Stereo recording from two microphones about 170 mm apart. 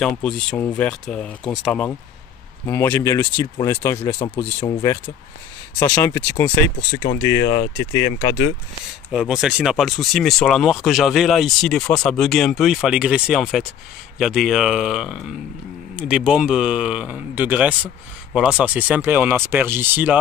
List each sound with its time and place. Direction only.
0.0 s speech: 5° left (ahead or behind); by 8.5 s 25° left (ahead or behind)
9.1 s speech: 5° right (ahead or behind)